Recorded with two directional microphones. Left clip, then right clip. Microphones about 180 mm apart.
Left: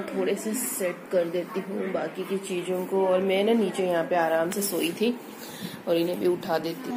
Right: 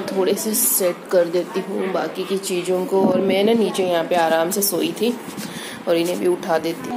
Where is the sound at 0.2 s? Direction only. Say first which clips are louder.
Right 8 dB; 25° right (ahead or behind).